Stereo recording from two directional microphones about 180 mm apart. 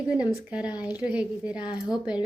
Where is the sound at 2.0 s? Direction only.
5° right (ahead or behind).